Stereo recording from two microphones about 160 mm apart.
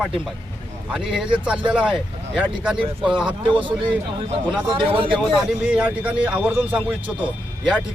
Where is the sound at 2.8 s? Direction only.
30° right (ahead or behind).